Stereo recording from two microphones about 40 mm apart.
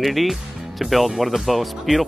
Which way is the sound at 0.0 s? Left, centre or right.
Centre.